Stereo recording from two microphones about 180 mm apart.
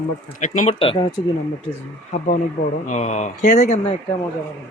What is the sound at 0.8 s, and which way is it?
Speech, 30° left (ahead or behind).